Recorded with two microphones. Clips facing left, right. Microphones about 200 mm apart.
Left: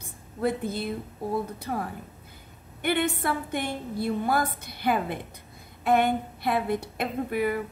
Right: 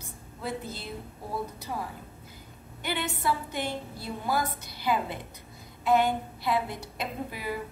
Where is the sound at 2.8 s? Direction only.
55° left (ahead or behind).